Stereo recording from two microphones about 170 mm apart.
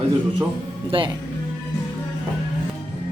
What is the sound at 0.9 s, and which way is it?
Speech, 30° right (ahead or behind).